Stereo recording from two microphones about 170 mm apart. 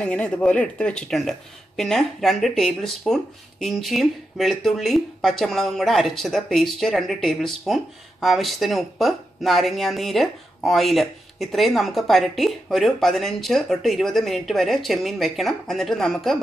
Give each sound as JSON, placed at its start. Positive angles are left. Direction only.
{"t": 0.0, "sound": "speech", "side_deg": 5}